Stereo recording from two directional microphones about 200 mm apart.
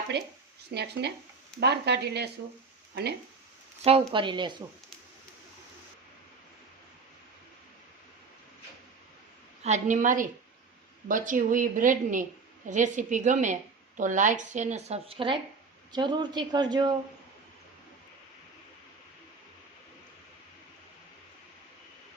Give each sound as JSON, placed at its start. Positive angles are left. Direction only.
{"t": 0.7, "sound": "speech", "side_deg": -55}
{"t": 4.1, "sound": "a woman's voice", "side_deg": -25}
{"t": 9.6, "sound": "a woman's voice", "side_deg": -35}